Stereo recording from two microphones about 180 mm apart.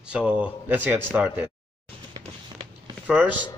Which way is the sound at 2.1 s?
25° right (ahead or behind).